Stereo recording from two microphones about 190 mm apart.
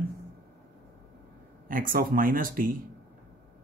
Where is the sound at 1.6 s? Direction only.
45° right (ahead or behind).